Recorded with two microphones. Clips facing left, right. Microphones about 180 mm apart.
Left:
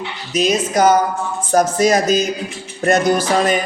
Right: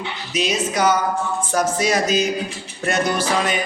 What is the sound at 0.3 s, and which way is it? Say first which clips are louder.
A man's voice: left 5 dB; 45° left (ahead or behind).